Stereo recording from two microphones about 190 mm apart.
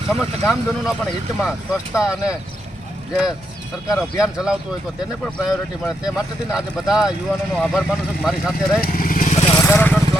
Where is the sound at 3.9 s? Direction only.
5° right (ahead or behind).